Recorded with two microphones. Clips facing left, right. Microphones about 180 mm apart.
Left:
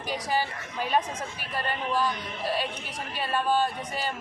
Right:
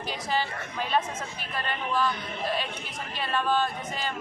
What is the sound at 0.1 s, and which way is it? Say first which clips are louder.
A woman's voice: left 2 dB; 10° left (ahead or behind).